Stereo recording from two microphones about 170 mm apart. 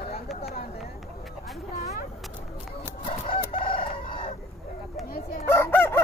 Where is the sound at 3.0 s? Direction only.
35° left (ahead or behind).